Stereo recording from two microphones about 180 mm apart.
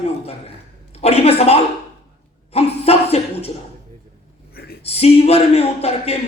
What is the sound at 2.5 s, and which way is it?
Chuckle, 35° left (ahead or behind).